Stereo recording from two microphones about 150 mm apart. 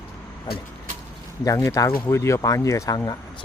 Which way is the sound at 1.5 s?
20° left (ahead or behind).